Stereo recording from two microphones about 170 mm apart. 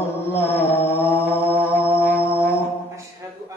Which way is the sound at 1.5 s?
15° left (ahead or behind).